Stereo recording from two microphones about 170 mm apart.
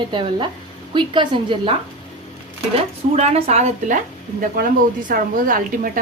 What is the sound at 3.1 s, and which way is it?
Speech, 40° right (ahead or behind).